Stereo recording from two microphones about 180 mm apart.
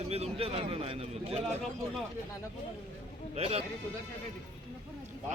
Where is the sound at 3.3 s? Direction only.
35° right (ahead or behind).